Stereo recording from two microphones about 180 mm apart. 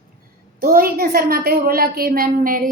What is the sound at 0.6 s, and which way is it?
A woman's voice, 55° right (ahead or behind).